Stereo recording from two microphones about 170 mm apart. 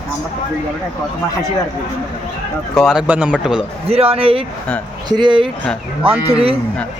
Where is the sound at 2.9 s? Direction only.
5° right (ahead or behind).